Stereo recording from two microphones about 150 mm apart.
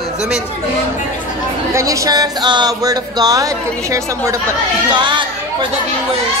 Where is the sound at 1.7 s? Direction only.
20° right (ahead or behind).